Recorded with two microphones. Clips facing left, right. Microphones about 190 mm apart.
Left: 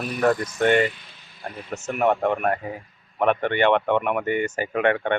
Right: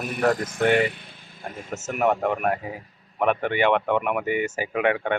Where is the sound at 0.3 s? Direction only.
55° right (ahead or behind).